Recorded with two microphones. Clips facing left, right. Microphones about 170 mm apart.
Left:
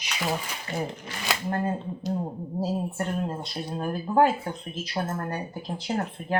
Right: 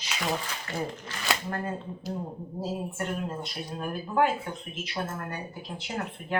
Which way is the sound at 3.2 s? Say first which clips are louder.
Left 3 dB; 35° left (ahead or behind).